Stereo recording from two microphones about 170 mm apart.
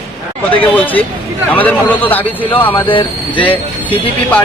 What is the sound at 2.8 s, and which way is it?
Speech, 30° left (ahead or behind).